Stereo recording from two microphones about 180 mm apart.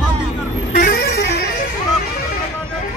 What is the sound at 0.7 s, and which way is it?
Music, 55° left (ahead or behind).